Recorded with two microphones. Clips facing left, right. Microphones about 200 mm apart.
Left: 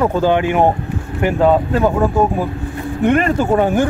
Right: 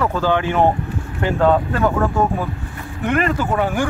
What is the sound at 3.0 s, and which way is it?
Speech, 25° left (ahead or behind).